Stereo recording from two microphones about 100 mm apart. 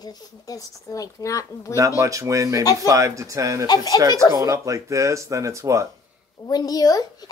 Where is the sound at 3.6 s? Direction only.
40° left (ahead or behind).